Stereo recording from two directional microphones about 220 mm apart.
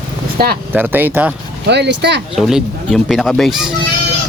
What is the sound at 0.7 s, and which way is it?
Speech, 10° right (ahead or behind).